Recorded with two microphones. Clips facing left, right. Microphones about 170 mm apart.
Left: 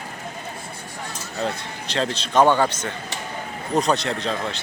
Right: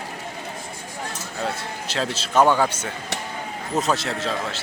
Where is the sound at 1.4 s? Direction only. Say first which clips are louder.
Left 1 dB; 5° right (ahead or behind).